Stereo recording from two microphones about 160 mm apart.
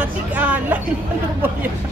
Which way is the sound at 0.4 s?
10° right (ahead or behind).